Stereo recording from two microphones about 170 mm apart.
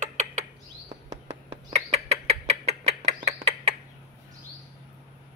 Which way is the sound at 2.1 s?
40° right (ahead or behind).